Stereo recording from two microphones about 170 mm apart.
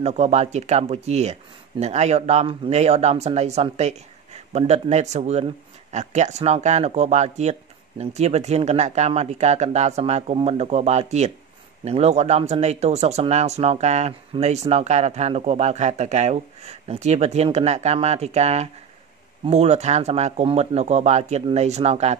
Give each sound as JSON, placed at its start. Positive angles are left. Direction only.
{"t": 0.0, "sound": "speech", "side_deg": -40}